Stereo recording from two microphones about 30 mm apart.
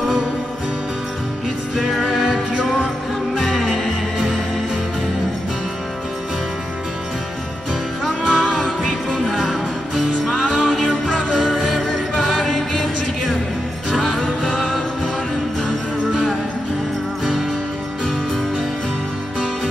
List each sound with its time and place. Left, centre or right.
1.8 s music: centre
8.3 s music: centre; by 14.6 s left